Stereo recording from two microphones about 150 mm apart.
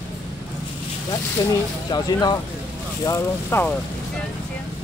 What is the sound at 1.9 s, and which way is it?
Speech, 30° left (ahead or behind).